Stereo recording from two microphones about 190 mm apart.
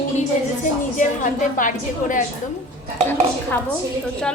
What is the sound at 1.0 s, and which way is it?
A woman's voice, 40° left (ahead or behind).